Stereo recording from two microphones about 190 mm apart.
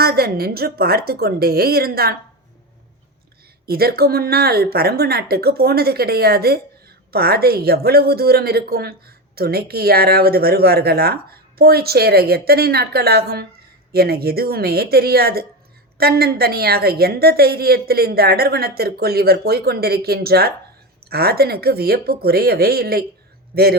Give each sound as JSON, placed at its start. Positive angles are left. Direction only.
{"t": 0.0, "sound": "a woman's voice", "side_deg": -55}
{"t": 3.7, "sound": "speech", "side_deg": -55}